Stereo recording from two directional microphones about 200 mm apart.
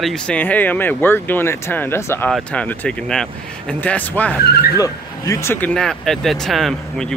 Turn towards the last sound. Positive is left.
turn(degrees=0)  # may be behind; listen again after turning